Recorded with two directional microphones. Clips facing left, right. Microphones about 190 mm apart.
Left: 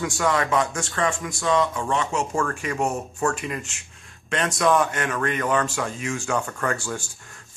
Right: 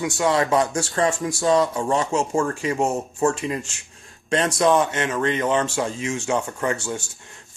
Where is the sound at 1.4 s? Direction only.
40° right (ahead or behind).